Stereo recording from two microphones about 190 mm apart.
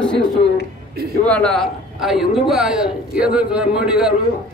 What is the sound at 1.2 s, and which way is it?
A man's voice, 5° left (ahead or behind).